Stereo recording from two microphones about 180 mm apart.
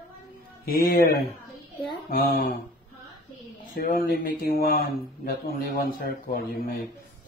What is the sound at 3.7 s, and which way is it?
Speech, 55° left (ahead or behind).